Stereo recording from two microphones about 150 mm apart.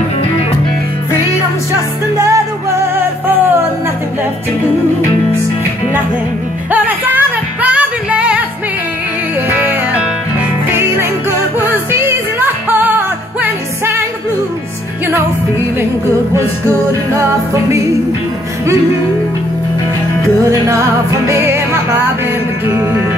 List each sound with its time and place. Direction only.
1.7 s music: 20° right (ahead or behind)
6.7 s music: 10° right (ahead or behind)
9.5 s music: 10° right (ahead or behind)
16.3 s music: 20° right (ahead or behind)
20.4 s music: 20° right (ahead or behind)